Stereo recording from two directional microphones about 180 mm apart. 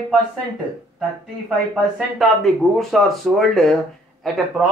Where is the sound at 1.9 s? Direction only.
Centre (ahead or behind).